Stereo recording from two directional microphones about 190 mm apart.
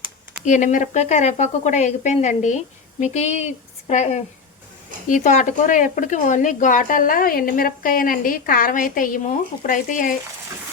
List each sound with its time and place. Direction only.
0.4 s speech: 40° left (ahead or behind)